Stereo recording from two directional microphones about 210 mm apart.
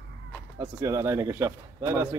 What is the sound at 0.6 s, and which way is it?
Speech, 15° right (ahead or behind).